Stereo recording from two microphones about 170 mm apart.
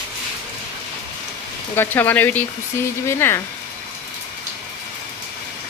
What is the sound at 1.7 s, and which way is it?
Speech, 10° left (ahead or behind).